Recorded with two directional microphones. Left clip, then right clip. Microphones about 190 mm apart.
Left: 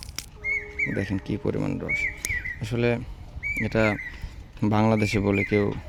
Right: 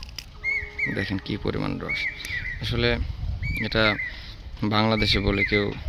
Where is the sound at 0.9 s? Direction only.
20° left (ahead or behind).